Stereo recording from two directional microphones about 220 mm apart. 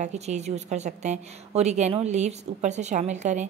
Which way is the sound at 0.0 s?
30° right (ahead or behind).